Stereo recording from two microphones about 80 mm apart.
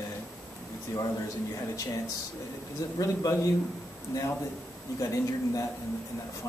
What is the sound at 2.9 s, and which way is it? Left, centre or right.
Speech, left.